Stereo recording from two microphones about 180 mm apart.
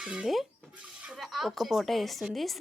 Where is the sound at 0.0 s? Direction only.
5° right (ahead or behind).